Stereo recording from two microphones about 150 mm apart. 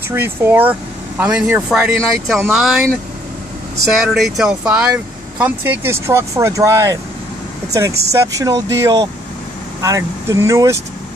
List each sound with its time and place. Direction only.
0.1 s speech: 15° right (ahead or behind)